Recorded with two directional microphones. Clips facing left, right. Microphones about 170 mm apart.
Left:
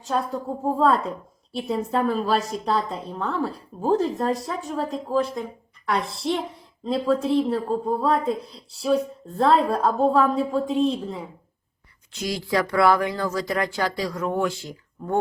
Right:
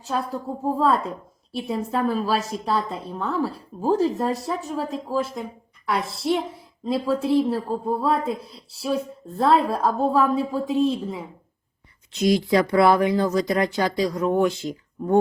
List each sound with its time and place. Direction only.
0.0 s a woman's voice: centre (ahead or behind)
12.1 s speech: 20° right (ahead or behind)